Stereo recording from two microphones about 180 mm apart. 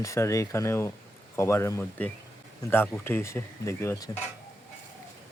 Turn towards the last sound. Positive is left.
turn(degrees=15)  # may be behind; listen again after turning